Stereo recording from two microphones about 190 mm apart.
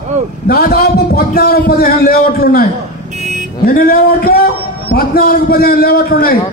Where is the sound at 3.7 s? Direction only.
50° left (ahead or behind).